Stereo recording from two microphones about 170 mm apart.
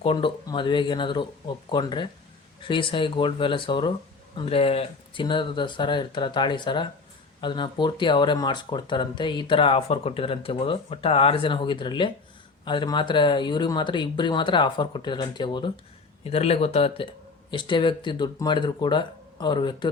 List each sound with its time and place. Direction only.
0.0 s speech: 30° left (ahead or behind)